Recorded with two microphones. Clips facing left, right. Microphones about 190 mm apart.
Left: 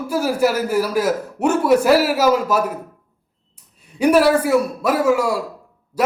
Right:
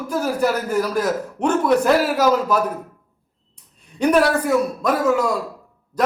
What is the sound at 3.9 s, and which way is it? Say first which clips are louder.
A man's voice: left 3 dB; 5° left (ahead or behind).